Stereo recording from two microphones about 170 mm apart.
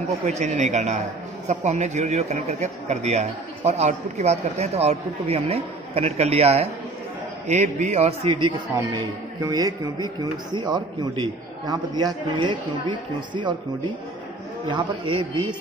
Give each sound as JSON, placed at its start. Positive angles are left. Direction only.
{"t": 0.3, "sound": "a man's voice", "side_deg": -45}
{"t": 14.7, "sound": "a man's voice", "side_deg": -30}